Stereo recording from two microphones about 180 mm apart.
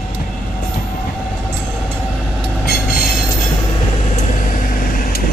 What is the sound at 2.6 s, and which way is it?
Train, 55° left (ahead or behind).